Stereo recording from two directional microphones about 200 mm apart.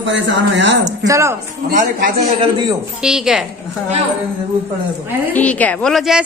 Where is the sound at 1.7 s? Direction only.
40° right (ahead or behind).